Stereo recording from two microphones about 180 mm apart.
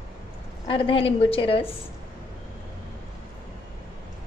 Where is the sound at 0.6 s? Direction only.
30° left (ahead or behind).